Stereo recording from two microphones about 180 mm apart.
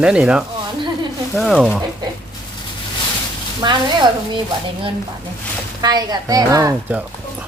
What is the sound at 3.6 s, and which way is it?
Speech, 25° right (ahead or behind).